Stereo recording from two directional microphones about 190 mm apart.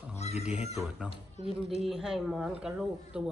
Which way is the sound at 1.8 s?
5° right (ahead or behind).